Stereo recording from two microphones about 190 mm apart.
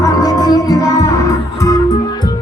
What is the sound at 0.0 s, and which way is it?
Music, 20° left (ahead or behind).